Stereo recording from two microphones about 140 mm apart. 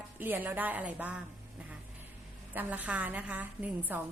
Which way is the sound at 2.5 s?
10° right (ahead or behind).